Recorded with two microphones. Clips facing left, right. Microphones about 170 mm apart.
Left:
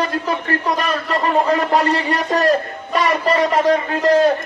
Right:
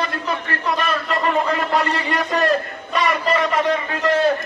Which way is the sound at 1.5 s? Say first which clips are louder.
Left 4 dB; 40° left (ahead or behind).